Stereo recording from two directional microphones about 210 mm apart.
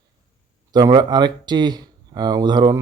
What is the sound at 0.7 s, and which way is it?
Speech, 20° right (ahead or behind).